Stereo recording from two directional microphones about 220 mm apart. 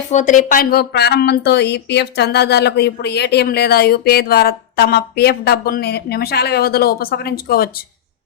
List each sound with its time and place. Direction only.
0.1 s speech: 35° left (ahead or behind)